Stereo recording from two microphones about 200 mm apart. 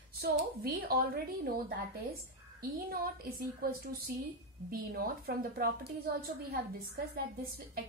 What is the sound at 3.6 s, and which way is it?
A woman's voice, 50° right (ahead or behind).